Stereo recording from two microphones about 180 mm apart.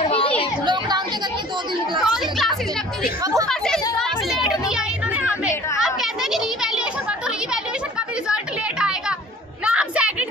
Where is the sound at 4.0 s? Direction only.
Centre (ahead or behind).